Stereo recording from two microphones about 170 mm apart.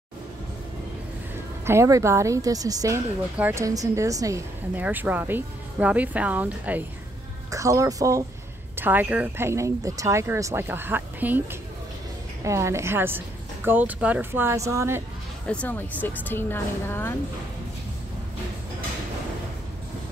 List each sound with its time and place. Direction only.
1.7 s a woman's voice: 15° right (ahead or behind)
12.4 s a woman's voice: 15° right (ahead or behind)
15.4 s speech: 5° left (ahead or behind)